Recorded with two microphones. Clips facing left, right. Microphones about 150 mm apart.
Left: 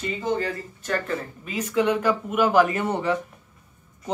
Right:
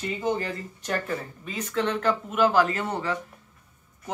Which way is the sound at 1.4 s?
10° left (ahead or behind).